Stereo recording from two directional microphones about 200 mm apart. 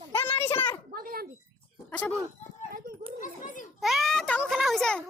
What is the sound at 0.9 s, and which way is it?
Speech, 45° right (ahead or behind).